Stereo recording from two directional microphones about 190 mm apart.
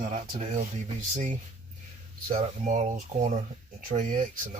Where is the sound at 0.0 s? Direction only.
40° right (ahead or behind).